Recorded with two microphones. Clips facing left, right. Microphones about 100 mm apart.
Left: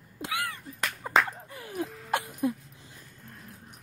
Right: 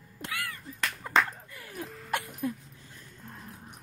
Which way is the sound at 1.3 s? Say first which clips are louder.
Left 6 dB; 25° left (ahead or behind).